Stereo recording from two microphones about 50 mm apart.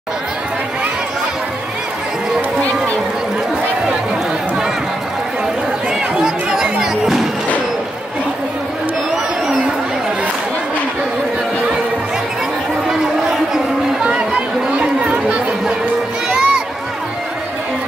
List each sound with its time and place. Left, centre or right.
5.9 s chatter: centre
12.8 s chatter: centre
14.0 s chatter: right
15.2 s chatter: centre
16.3 s music: centre